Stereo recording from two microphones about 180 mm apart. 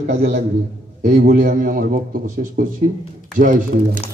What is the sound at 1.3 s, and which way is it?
A man's voice, 45° right (ahead or behind).